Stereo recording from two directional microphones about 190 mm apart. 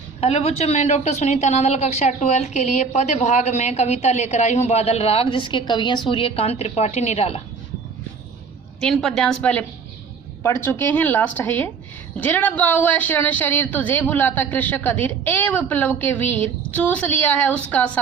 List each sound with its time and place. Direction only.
0.2 s a woman's voice: 35° left (ahead or behind)
8.8 s a woman's voice: 5° left (ahead or behind)